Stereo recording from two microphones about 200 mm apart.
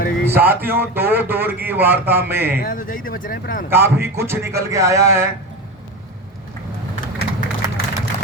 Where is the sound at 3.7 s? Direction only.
10° right (ahead or behind).